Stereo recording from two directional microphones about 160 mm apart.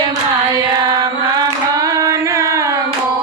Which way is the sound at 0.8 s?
25° right (ahead or behind).